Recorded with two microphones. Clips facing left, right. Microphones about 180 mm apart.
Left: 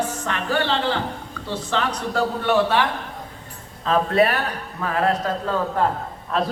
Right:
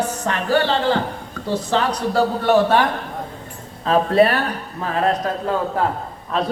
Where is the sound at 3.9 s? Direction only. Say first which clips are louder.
Right 3 dB; 35° right (ahead or behind).